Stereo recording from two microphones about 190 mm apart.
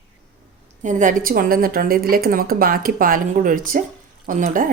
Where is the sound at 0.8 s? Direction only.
40° right (ahead or behind).